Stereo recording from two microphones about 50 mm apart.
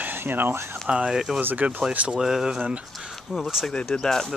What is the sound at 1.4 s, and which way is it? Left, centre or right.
Speech, right.